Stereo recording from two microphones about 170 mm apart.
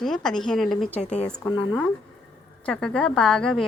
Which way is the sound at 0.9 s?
40° left (ahead or behind).